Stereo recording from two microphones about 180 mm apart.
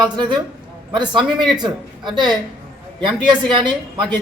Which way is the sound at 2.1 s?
25° right (ahead or behind).